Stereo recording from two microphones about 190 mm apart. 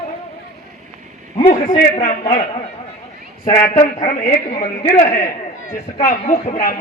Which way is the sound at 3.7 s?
35° left (ahead or behind).